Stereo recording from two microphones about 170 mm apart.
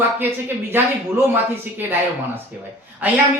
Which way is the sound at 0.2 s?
10° right (ahead or behind).